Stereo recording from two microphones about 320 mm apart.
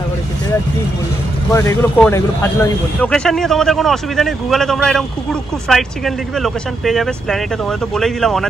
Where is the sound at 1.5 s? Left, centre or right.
Centre.